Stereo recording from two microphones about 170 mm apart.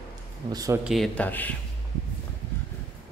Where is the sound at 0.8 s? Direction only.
Centre (ahead or behind).